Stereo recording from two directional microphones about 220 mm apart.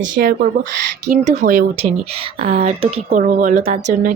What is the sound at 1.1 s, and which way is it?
Speech, 30° right (ahead or behind).